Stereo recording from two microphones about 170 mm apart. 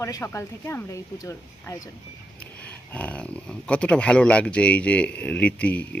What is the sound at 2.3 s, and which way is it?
Speech, 10° left (ahead or behind).